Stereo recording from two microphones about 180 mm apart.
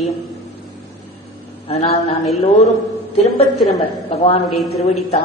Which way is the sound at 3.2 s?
35° left (ahead or behind).